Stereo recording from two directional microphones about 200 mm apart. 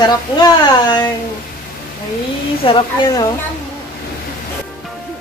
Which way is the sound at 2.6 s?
25° left (ahead or behind).